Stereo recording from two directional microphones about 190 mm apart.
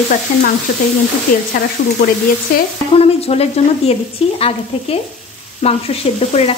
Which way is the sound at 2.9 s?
30° left (ahead or behind).